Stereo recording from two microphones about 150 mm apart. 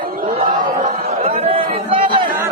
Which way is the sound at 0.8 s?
45° right (ahead or behind).